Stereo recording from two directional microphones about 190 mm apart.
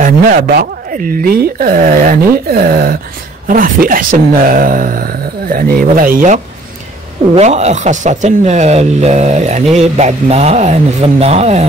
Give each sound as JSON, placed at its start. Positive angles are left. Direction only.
{"t": 0.0, "sound": "speech", "side_deg": -55}